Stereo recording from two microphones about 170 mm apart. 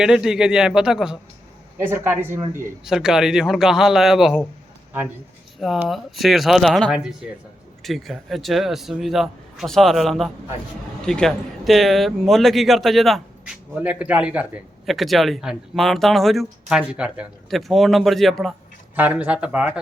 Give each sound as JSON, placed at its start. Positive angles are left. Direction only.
{"t": 0.0, "sound": "a man's voice", "side_deg": -5}
{"t": 2.8, "sound": "a man's voice", "side_deg": -5}
{"t": 5.5, "sound": "a man's voice", "side_deg": 0}